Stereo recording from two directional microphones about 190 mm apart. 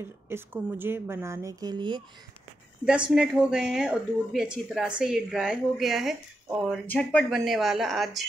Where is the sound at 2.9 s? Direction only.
5° right (ahead or behind).